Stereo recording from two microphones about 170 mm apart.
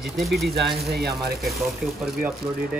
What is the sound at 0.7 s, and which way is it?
Speech, centre (ahead or behind).